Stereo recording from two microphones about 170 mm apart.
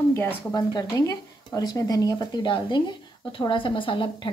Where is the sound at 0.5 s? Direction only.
20° left (ahead or behind).